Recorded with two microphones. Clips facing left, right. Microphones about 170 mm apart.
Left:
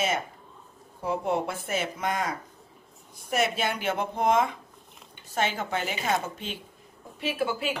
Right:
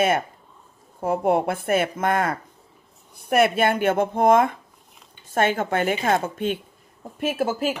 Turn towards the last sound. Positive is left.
turn(degrees=-40)  # may be behind; listen again after turning